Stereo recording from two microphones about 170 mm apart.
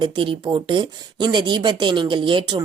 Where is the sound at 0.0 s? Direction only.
30° right (ahead or behind).